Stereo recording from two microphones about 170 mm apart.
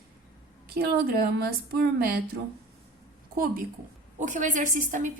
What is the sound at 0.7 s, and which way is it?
A woman's voice, 65° right (ahead or behind).